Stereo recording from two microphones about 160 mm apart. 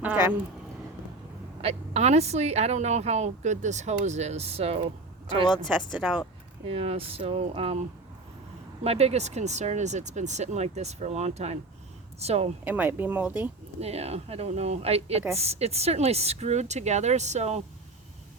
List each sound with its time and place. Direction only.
0.0 s a sound: 10° right (ahead or behind)
1.6 s speech: 40° right (ahead or behind)
5.3 s speech: 25° left (ahead or behind)
6.7 s speech: 40° right (ahead or behind)
12.6 s speech: 10° right (ahead or behind)
13.7 s speech: 40° right (ahead or behind)